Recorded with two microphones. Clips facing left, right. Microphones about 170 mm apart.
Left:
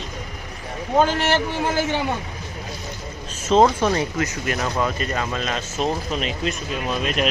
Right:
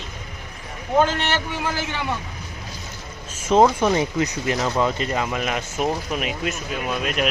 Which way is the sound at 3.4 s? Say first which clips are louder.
Even; 10° right (ahead or behind).